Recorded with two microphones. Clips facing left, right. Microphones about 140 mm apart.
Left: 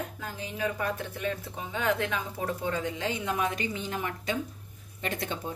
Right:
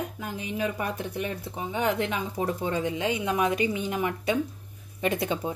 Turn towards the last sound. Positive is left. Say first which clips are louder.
# right 6 dB
turn(degrees=-10)  # may be behind; listen again after turning